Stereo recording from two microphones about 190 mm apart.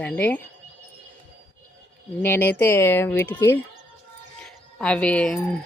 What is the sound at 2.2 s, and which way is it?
A woman's voice, 10° left (ahead or behind).